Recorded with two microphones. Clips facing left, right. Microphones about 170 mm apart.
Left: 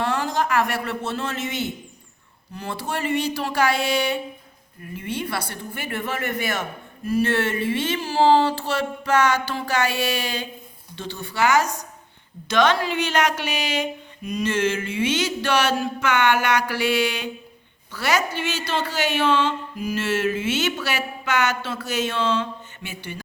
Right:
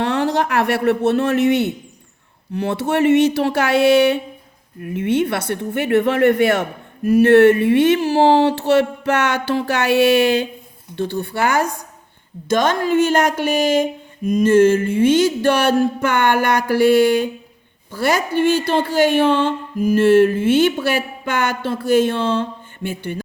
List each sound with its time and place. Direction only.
0.0 s speech: 65° right (ahead or behind)
4.8 s speech: 65° right (ahead or behind)